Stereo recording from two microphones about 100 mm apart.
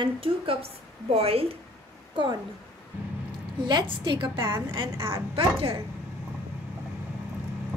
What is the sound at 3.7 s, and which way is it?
A woman's voice, 50° right (ahead or behind).